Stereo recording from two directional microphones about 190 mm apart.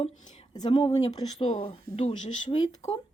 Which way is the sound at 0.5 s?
25° left (ahead or behind).